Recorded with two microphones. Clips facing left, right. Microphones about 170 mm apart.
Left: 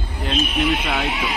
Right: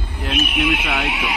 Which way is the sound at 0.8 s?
5° right (ahead or behind).